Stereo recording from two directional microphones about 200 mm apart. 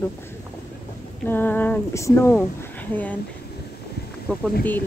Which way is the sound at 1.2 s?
10° left (ahead or behind).